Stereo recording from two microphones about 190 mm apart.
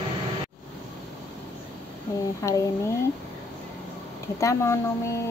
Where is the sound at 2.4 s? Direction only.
15° left (ahead or behind).